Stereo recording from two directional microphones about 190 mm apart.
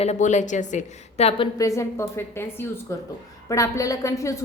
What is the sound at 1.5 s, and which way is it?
A woman's voice, 15° left (ahead or behind).